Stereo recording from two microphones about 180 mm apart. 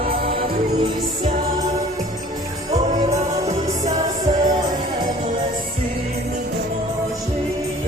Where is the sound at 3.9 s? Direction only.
20° right (ahead or behind).